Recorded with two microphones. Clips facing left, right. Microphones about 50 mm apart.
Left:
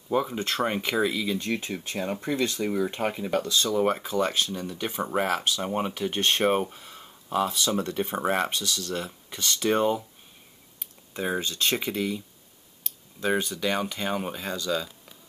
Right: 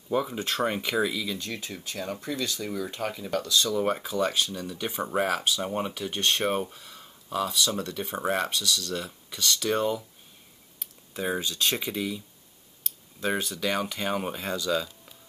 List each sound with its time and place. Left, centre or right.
0.1 s speech: centre
1.1 s speech: left
3.9 s speech: centre; by 10.0 s left
11.1 s speech: centre
13.2 s speech: centre